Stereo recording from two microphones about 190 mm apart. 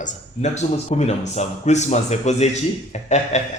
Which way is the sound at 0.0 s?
35° left (ahead or behind).